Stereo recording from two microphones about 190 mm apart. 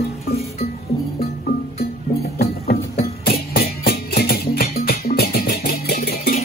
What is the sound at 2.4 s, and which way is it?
Music, 55° left (ahead or behind).